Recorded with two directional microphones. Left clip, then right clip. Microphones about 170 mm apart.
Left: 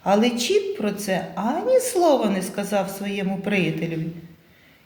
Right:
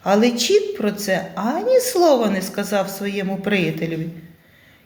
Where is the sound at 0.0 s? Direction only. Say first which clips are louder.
Right 3 dB; 25° right (ahead or behind).